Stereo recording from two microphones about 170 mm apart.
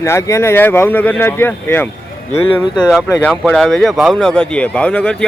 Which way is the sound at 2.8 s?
Centre (ahead or behind).